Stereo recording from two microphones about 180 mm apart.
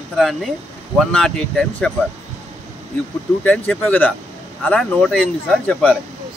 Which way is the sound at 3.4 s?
10° left (ahead or behind).